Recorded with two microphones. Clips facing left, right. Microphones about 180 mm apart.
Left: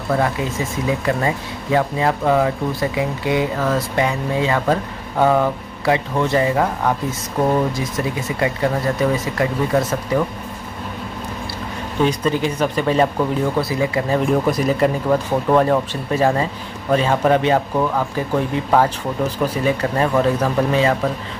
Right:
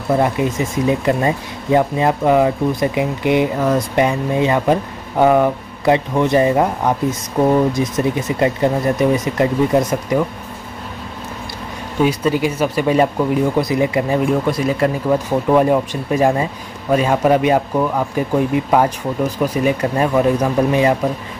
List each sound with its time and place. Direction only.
0.1 s speech: 20° right (ahead or behind)
12.0 s speech: 10° right (ahead or behind)
14.2 s speech: centre (ahead or behind)